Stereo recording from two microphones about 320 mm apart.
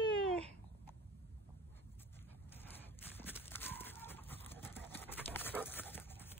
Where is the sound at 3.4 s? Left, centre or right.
Centre.